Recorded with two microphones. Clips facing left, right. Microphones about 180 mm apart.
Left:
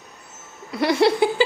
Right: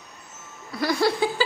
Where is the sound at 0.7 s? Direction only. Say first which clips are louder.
Left 5 dB; 25° left (ahead or behind).